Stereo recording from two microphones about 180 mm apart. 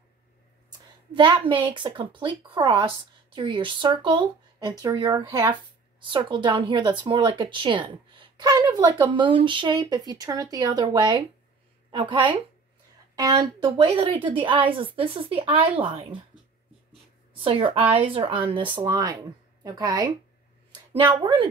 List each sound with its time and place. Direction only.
1.1 s speech: 25° right (ahead or behind)
14.1 s a woman's voice: 10° right (ahead or behind)
14.7 s speech: 30° right (ahead or behind)
17.4 s speech: 30° right (ahead or behind)
21.1 s speech: 25° right (ahead or behind)